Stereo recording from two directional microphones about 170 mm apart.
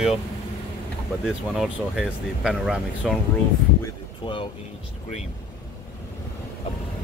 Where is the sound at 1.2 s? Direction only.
Centre (ahead or behind).